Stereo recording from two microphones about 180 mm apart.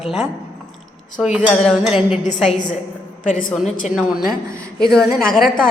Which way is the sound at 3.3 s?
50° left (ahead or behind).